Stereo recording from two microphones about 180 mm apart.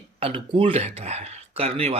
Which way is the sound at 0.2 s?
30° right (ahead or behind).